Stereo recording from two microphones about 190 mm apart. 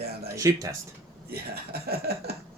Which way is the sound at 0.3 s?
15° right (ahead or behind).